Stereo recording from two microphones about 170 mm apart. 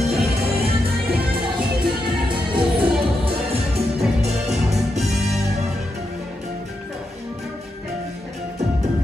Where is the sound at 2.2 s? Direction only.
30° right (ahead or behind).